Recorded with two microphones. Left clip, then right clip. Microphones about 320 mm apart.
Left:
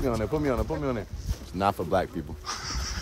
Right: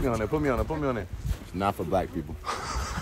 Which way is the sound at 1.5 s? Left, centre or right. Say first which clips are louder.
Left 2 dB; centre.